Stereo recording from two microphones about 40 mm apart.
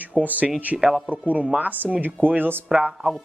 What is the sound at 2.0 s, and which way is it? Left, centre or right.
Speech, right.